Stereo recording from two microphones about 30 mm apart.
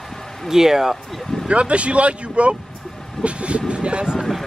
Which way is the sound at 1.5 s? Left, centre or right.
Right.